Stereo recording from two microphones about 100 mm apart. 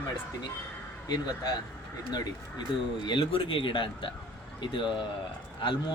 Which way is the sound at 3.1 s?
60° left (ahead or behind).